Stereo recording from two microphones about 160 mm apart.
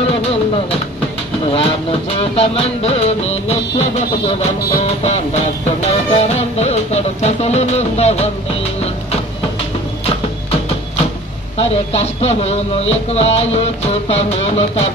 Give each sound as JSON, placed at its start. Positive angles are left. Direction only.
{"t": 1.5, "sound": "music", "side_deg": 35}
{"t": 5.0, "sound": "music", "side_deg": 40}
{"t": 11.5, "sound": "music", "side_deg": 40}